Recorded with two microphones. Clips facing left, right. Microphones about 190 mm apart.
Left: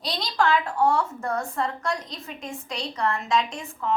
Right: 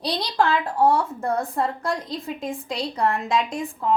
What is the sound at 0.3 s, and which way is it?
Speech, 35° right (ahead or behind).